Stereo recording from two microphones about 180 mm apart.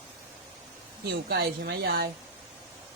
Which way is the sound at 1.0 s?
65° right (ahead or behind).